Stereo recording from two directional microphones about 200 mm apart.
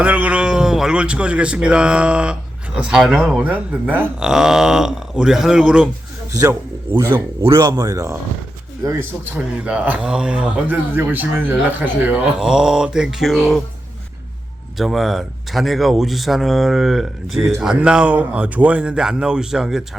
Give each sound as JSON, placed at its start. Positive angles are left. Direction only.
{"t": 0.0, "sound": "speech", "side_deg": -10}
{"t": 6.3, "sound": "speech", "side_deg": -15}
{"t": 14.8, "sound": "speech", "side_deg": 0}